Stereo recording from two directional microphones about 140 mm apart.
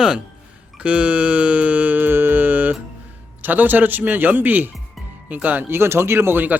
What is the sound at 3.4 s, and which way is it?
Speech, 10° right (ahead or behind).